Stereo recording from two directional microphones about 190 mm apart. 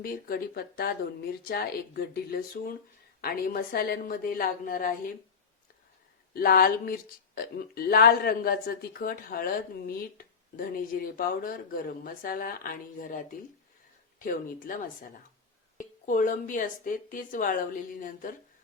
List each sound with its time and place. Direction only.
0.0 s speech: 50° left (ahead or behind)
6.3 s speech: 50° left (ahead or behind)
15.8 s speech: 45° left (ahead or behind)